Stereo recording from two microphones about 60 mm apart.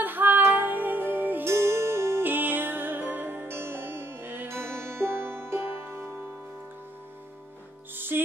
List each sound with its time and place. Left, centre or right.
0.0 s music: right
1.5 s music: right
7.9 s music: right